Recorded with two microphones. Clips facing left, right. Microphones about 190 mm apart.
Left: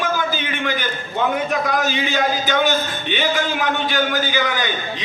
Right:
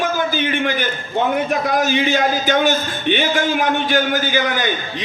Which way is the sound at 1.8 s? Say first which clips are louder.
Right 4 dB; 45° right (ahead or behind).